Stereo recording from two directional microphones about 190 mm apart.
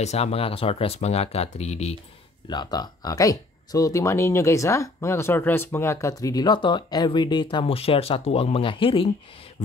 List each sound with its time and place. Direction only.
0.0 s speech: 35° left (ahead or behind)
2.4 s speech: 20° left (ahead or behind)